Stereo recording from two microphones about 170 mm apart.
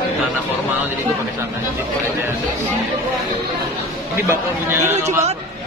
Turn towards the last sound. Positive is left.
turn(degrees=-40)  # may be behind; listen again after turning